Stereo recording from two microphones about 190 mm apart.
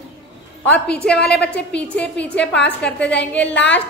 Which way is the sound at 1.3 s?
5° left (ahead or behind).